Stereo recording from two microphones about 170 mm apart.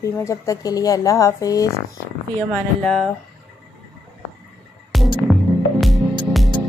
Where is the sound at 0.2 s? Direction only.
20° left (ahead or behind).